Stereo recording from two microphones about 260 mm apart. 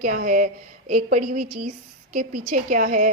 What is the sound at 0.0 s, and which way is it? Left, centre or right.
A woman's voice, right.